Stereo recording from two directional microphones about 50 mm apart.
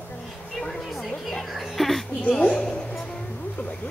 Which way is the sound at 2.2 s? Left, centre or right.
Centre.